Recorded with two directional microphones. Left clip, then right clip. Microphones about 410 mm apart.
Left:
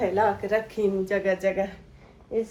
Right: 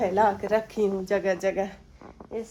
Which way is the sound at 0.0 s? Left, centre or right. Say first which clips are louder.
Right 1 dB; centre.